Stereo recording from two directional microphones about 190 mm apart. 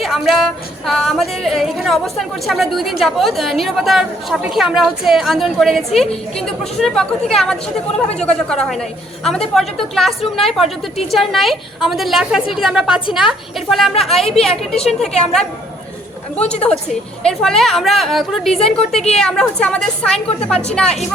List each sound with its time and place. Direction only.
0.0 s speech: centre (ahead or behind)
17.2 s speech: centre (ahead or behind)